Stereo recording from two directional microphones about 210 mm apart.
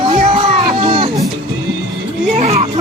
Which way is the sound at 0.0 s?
30° right (ahead or behind).